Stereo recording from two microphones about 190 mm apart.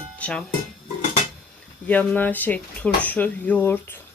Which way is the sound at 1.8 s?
5° left (ahead or behind).